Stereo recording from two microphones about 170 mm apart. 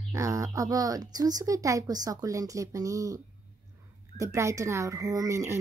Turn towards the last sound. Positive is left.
turn(degrees=-15)  # may be behind; listen again after turning